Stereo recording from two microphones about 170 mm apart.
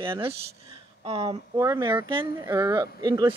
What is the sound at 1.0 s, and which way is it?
Speech, 35° right (ahead or behind).